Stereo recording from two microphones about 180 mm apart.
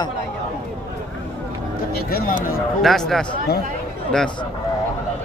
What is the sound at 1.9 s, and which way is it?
Speech, 55° left (ahead or behind).